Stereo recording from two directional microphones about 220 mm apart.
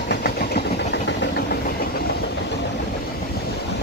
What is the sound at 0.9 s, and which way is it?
Engine, 50° left (ahead or behind).